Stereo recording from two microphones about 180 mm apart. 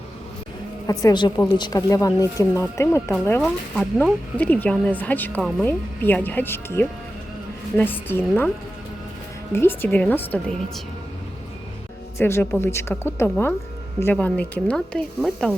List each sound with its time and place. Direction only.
0.9 s a woman's voice: 25° left (ahead or behind)
9.5 s speech: 15° left (ahead or behind)
12.1 s speech: 15° left (ahead or behind)